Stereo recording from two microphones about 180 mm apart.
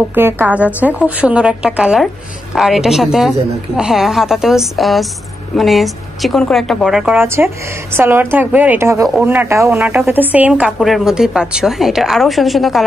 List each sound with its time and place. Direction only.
0.1 s a woman's voice: 10° right (ahead or behind)